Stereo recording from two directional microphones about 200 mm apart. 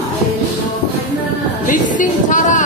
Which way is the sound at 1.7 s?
40° left (ahead or behind).